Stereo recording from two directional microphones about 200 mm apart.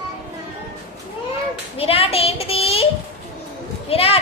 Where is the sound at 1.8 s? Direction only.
30° left (ahead or behind).